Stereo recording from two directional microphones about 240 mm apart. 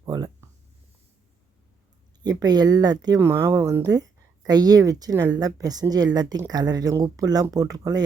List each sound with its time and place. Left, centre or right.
0.0 s speech: centre
2.4 s speech: centre